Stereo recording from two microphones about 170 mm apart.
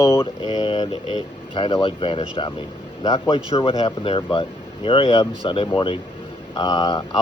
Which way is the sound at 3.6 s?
35° left (ahead or behind).